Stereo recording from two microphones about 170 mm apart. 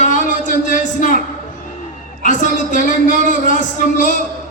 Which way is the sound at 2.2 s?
50° left (ahead or behind).